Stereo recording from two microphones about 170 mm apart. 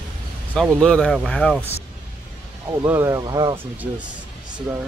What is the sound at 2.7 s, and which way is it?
Speech, 15° right (ahead or behind).